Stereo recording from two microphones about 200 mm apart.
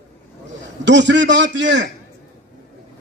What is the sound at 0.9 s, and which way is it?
A man's voice, 65° right (ahead or behind).